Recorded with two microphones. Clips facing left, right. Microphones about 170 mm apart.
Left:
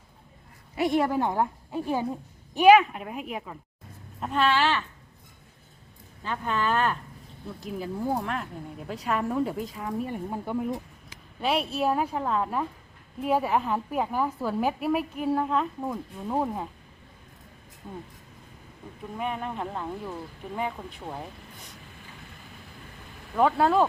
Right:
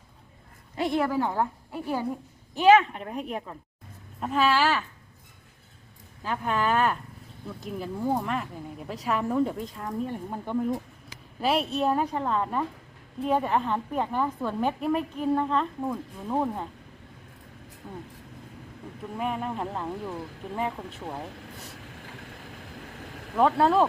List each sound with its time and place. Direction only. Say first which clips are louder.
0.8 s a woman's voice: left 1 dB; 15° left (ahead or behind); by 4.8 s 5° right (ahead or behind)
6.2 s a woman's voice: right 1 dB; 5° right (ahead or behind)
19.1 s a woman's voice: right 1 dB; centre (ahead or behind)
23.4 s a woman's voice: even; centre (ahead or behind)